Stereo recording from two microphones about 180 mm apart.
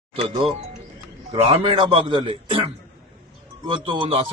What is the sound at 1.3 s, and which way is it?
A man's voice, 30° right (ahead or behind).